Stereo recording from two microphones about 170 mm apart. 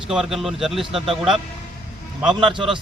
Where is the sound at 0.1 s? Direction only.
Centre (ahead or behind).